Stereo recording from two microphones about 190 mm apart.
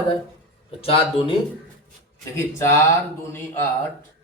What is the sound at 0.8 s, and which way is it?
Speech, 30° left (ahead or behind).